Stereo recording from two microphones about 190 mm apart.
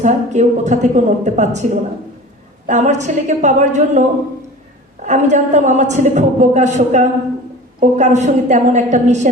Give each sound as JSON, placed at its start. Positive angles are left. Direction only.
{"t": 0.0, "sound": "a woman's voice", "side_deg": -40}
{"t": 5.0, "sound": "a woman's voice", "side_deg": -40}